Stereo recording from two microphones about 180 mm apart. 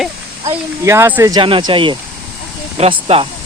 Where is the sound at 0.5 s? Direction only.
15° right (ahead or behind).